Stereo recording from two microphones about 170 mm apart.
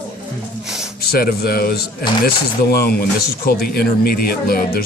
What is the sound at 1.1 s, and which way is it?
A man's voice, 65° left (ahead or behind).